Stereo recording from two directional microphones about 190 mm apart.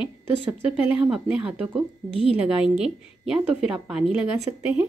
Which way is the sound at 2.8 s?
5° right (ahead or behind).